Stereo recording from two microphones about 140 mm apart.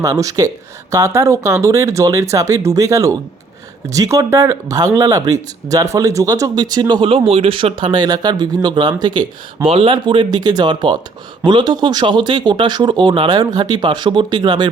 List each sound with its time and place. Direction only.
0.0 s a man's voice: 25° right (ahead or behind)